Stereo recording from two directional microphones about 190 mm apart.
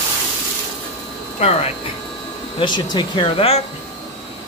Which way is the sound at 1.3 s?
35° left (ahead or behind).